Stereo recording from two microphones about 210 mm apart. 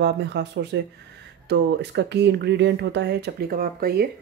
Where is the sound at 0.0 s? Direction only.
55° right (ahead or behind).